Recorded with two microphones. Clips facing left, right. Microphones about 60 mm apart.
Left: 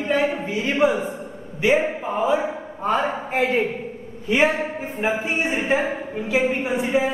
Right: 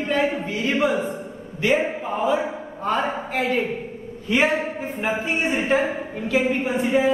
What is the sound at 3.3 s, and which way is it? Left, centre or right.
Speech, left.